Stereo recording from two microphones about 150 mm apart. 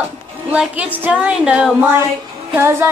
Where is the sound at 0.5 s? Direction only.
10° right (ahead or behind).